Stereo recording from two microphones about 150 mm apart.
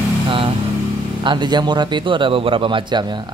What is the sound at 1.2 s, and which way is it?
A man's voice, 30° right (ahead or behind).